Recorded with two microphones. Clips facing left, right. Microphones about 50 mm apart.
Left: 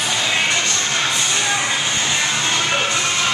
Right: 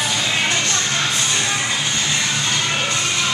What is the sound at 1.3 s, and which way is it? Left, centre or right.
Music, centre.